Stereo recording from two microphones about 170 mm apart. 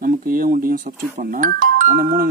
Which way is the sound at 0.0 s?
55° right (ahead or behind).